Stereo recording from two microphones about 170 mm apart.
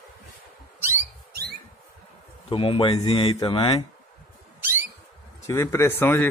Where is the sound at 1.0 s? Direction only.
70° right (ahead or behind).